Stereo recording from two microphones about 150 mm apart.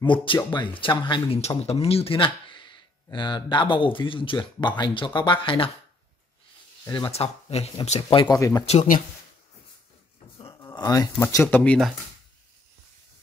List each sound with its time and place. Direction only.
0.0 s speech: 35° left (ahead or behind)
1.6 s speech: 45° left (ahead or behind)
7.1 s speech: 45° left (ahead or behind)
8.4 s speech: 20° left (ahead or behind)
10.5 s speech: 25° left (ahead or behind); by 11.9 s 10° left (ahead or behind)